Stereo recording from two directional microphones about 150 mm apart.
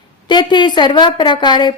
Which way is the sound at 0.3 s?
30° left (ahead or behind).